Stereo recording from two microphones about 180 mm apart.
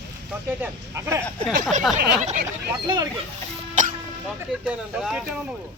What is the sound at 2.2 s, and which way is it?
Speech, 40° right (ahead or behind).